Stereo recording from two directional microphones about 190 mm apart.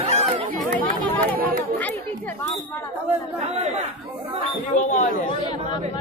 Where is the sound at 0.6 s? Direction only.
10° left (ahead or behind).